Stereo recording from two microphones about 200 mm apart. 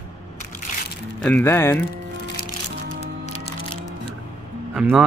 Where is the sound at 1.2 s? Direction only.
10° left (ahead or behind).